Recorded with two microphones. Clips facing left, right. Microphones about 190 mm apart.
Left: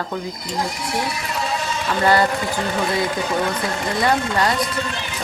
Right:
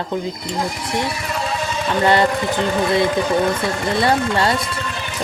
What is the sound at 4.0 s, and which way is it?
Speech, 30° right (ahead or behind).